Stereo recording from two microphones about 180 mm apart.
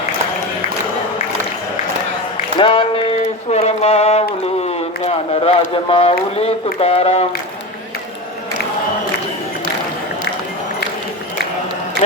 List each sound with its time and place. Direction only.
2.6 s speech: 30° left (ahead or behind)